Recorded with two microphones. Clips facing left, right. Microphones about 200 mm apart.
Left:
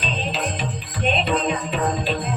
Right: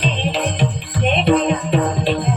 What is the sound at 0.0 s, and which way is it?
Music, 65° right (ahead or behind).